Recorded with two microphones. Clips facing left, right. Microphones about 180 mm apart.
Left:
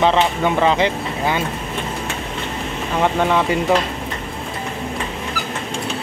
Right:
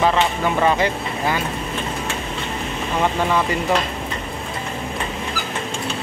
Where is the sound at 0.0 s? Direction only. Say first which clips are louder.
Left 2 dB; 20° left (ahead or behind).